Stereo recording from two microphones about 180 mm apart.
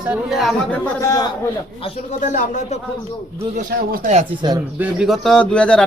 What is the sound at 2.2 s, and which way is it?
Speech, 45° left (ahead or behind).